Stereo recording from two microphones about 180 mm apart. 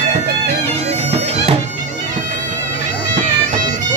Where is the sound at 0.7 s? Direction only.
35° right (ahead or behind).